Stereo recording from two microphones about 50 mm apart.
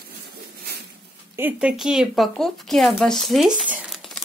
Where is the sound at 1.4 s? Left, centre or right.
Right.